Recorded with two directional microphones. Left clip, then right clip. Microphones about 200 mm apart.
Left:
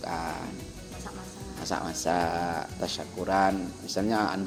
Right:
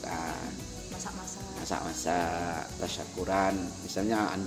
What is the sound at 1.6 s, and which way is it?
Speech, 30° left (ahead or behind).